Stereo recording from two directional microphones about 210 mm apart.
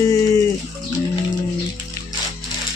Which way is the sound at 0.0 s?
15° left (ahead or behind).